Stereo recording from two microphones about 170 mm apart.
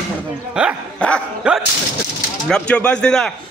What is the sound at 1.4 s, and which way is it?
Speech, 5° right (ahead or behind).